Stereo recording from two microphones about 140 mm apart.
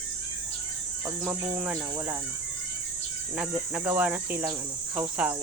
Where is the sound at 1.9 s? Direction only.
20° right (ahead or behind).